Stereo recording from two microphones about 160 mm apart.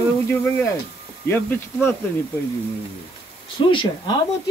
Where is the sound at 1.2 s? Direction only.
15° left (ahead or behind).